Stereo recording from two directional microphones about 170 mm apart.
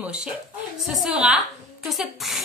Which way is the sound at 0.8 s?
Centre (ahead or behind).